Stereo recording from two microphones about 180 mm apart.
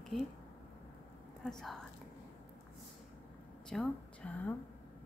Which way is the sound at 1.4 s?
5° left (ahead or behind).